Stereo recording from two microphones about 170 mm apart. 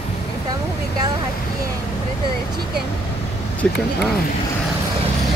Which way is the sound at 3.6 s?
5° left (ahead or behind).